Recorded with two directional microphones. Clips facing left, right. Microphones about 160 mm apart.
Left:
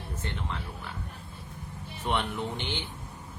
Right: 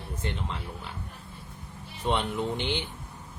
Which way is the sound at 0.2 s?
20° right (ahead or behind).